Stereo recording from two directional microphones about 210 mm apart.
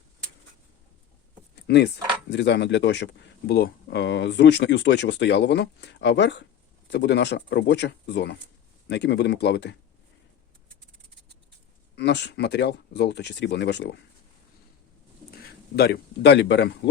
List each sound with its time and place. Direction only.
1.6 s speech: 50° left (ahead or behind)
11.9 s speech: 55° left (ahead or behind)
15.3 s speech: 50° left (ahead or behind)